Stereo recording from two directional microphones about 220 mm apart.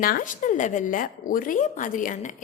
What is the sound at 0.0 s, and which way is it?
Speech, 40° left (ahead or behind).